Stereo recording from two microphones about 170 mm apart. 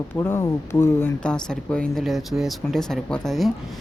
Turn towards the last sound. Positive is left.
turn(degrees=0)  # may be behind; listen again after turning